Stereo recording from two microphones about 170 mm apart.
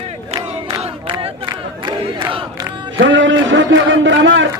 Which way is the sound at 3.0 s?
90° right.